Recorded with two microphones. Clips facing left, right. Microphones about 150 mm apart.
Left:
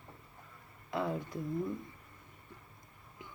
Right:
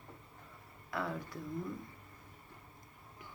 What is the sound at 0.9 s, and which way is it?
Speech, 20° left (ahead or behind).